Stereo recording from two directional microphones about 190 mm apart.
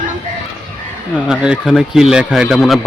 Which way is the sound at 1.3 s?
5° right (ahead or behind).